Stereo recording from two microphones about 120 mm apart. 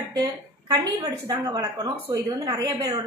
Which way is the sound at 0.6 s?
35° right (ahead or behind).